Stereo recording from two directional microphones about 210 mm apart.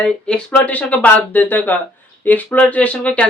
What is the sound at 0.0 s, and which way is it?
Speech, 5° left (ahead or behind).